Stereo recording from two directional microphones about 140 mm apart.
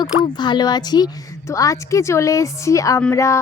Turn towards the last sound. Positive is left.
turn(degrees=20)  # may be behind; listen again after turning